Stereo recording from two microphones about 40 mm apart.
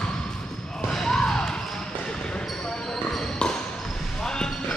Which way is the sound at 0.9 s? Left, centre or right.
Centre.